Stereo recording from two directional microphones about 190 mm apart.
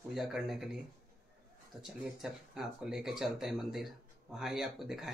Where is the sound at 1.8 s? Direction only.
Centre (ahead or behind).